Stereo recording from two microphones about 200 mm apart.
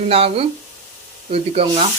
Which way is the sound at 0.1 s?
30° right (ahead or behind).